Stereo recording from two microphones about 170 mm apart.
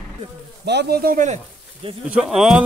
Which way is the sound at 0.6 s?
75° right (ahead or behind).